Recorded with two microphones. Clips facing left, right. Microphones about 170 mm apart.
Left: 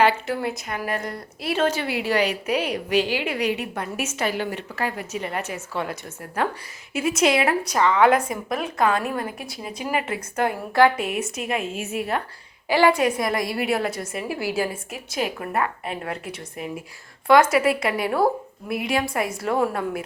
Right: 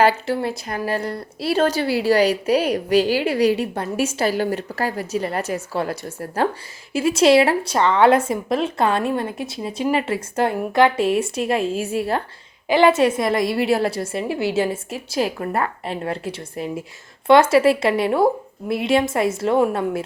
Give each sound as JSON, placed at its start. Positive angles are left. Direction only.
{"t": 0.0, "sound": "a woman's voice", "side_deg": -30}
{"t": 12.6, "sound": "speech", "side_deg": -20}